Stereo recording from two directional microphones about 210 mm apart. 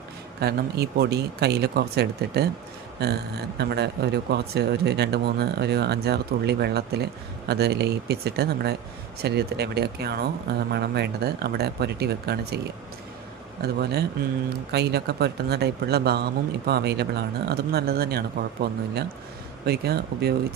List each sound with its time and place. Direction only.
0.3 s speech: 50° right (ahead or behind)
13.6 s speech: 50° right (ahead or behind)